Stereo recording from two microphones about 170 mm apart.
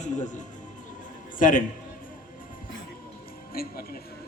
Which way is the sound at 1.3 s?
50° left (ahead or behind).